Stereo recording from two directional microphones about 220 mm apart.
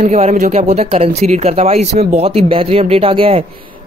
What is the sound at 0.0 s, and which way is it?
Speech, 30° right (ahead or behind).